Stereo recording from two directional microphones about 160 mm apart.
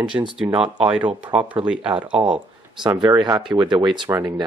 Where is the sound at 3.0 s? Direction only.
25° right (ahead or behind).